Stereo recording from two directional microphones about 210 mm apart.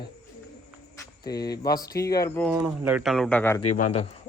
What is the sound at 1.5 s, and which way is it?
Speech, 20° left (ahead or behind).